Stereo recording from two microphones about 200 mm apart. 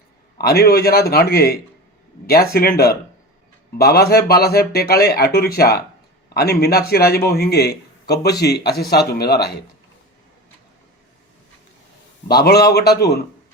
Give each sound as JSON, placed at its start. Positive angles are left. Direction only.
{"t": 0.3, "sound": "a man's voice", "side_deg": 50}
{"t": 12.3, "sound": "a man's voice", "side_deg": 50}